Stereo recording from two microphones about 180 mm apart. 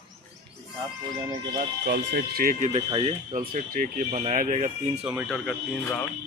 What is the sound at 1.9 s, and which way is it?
Speech, 60° right (ahead or behind).